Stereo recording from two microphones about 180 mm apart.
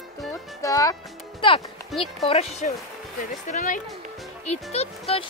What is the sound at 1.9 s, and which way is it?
Speech, centre (ahead or behind).